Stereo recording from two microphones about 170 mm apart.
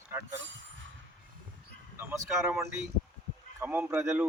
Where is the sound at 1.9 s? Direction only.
10° right (ahead or behind).